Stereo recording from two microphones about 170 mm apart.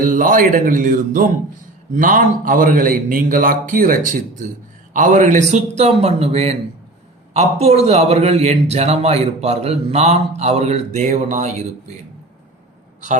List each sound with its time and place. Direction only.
0.0 s a man's voice: 50° right (ahead or behind)